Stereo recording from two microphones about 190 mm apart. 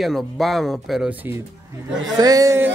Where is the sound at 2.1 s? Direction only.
20° right (ahead or behind).